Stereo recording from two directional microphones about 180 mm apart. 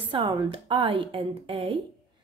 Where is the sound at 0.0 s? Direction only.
25° right (ahead or behind).